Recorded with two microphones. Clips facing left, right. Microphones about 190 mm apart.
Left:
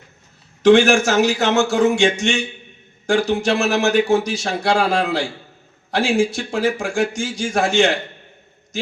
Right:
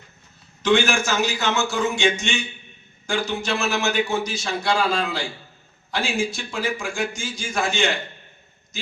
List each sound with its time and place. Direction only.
0.6 s a man's voice: 80° left